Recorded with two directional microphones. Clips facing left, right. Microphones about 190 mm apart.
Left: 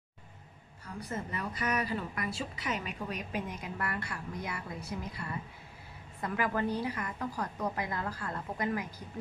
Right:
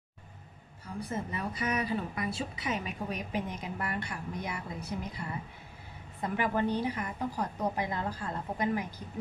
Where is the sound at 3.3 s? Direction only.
20° right (ahead or behind).